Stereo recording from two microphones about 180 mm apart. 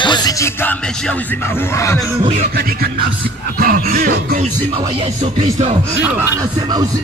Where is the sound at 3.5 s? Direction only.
50° right (ahead or behind).